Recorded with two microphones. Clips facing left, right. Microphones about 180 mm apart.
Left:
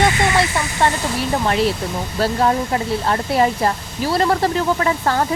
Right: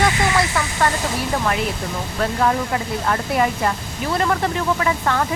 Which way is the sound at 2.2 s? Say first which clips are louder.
Left 2 dB; 30° left (ahead or behind).